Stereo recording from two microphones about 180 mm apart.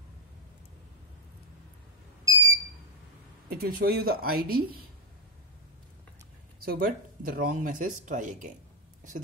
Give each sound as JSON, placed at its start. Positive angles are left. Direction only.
{"t": 2.2, "sound": "owl", "side_deg": -15}
{"t": 3.4, "sound": "speech", "side_deg": -55}
{"t": 6.6, "sound": "speech", "side_deg": -55}